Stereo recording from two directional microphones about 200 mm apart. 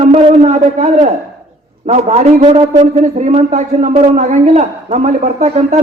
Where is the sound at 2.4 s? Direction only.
25° right (ahead or behind).